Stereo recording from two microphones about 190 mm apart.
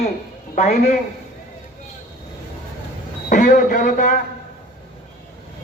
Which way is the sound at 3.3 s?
40° left (ahead or behind).